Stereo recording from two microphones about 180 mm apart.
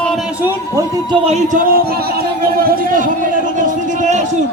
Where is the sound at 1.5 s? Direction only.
50° right (ahead or behind).